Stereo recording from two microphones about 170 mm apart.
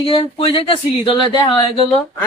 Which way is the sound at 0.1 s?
30° left (ahead or behind).